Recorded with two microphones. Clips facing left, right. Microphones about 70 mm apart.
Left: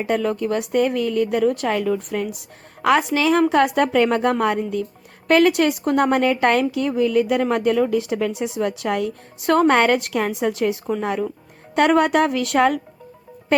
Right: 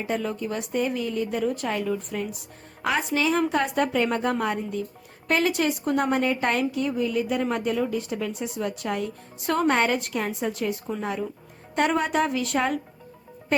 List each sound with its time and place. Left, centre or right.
0.1 s a woman's voice: left
5.3 s a woman's voice: left
11.7 s speech: left